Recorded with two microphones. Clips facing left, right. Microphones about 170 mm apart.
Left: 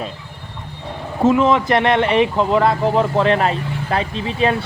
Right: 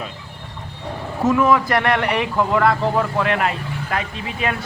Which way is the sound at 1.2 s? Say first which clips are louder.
Left 2 dB; 25° left (ahead or behind).